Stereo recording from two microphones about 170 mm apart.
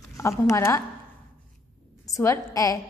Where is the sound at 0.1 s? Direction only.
20° left (ahead or behind).